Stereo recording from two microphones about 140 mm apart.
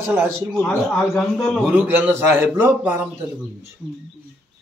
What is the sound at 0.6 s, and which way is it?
A man's voice, 5° left (ahead or behind).